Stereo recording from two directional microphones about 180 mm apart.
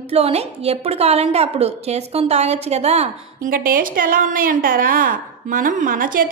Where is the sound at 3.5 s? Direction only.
50° right (ahead or behind).